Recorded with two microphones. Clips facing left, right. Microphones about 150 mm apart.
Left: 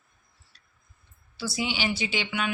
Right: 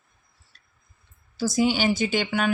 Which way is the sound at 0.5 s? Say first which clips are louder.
Right 1 dB; 50° right (ahead or behind).